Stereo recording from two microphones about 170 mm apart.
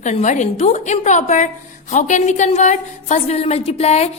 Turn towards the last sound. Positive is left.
turn(degrees=40)  # may be behind; listen again after turning